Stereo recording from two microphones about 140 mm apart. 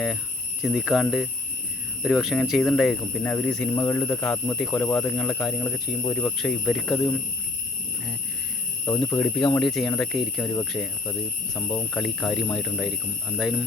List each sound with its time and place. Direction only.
0.6 s speech: centre (ahead or behind)
3.0 s speech: 15° left (ahead or behind)
6.4 s speech: 5° left (ahead or behind)
8.9 s speech: 10° left (ahead or behind)
10.4 s speech: 15° left (ahead or behind)
11.9 s speech: 5° left (ahead or behind)